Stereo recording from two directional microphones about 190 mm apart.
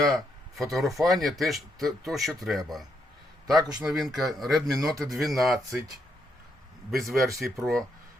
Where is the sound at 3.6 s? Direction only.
20° right (ahead or behind).